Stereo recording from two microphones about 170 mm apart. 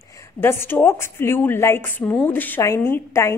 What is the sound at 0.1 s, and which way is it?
A woman's voice, 15° left (ahead or behind).